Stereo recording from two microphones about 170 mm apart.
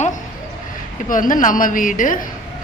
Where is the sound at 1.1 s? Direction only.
50° left (ahead or behind).